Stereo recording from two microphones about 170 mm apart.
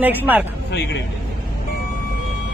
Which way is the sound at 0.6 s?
90° left.